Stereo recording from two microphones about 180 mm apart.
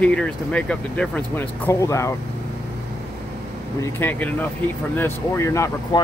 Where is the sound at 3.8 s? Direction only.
10° left (ahead or behind).